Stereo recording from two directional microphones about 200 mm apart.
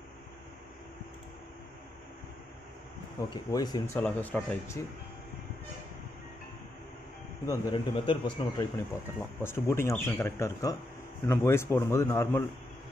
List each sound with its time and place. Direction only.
3.5 s speech: 20° left (ahead or behind)
7.4 s speech: 15° left (ahead or behind)